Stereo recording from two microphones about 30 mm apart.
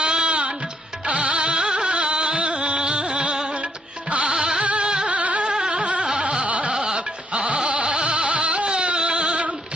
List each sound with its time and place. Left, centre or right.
0.0 s music: right
4.6 s music: right
5.1 s carnatic music: right
5.4 s carnatic music: right
5.8 s carnatic music: right
6.7 s goat: right
7.9 s music: right
8.7 s a sound: right